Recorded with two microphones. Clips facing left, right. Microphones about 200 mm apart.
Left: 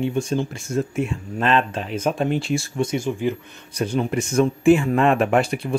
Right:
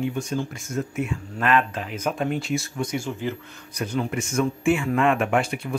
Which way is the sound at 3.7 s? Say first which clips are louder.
Left 4 dB; 30° left (ahead or behind).